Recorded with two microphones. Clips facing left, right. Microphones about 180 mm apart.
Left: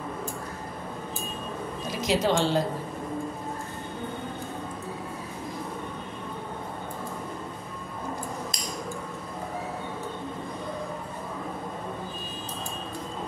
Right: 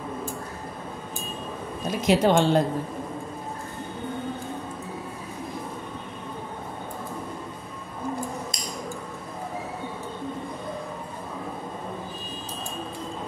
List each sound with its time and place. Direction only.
1.9 s speech: 55° right (ahead or behind)